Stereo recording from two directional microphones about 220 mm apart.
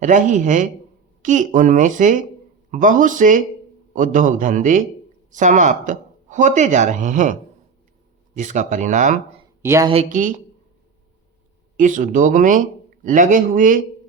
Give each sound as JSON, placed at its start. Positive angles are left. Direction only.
{"t": 0.0, "sound": "speech", "side_deg": -35}
{"t": 8.4, "sound": "speech", "side_deg": -35}
{"t": 9.6, "sound": "a woman's voice", "side_deg": -15}
{"t": 9.9, "sound": "speech", "side_deg": -35}
{"t": 11.8, "sound": "speech", "side_deg": -35}